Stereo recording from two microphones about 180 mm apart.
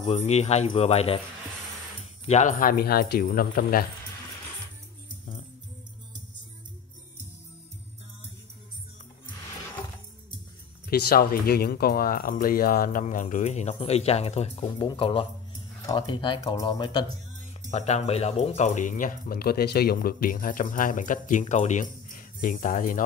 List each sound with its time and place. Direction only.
0.0 s speech: 35° left (ahead or behind)
2.2 s speech: 40° left (ahead or behind)
10.9 s speech: 60° left (ahead or behind); by 17.0 s 25° left (ahead or behind)
17.6 s speech: 40° left (ahead or behind)